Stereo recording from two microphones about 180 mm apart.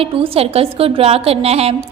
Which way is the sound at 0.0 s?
35° right (ahead or behind).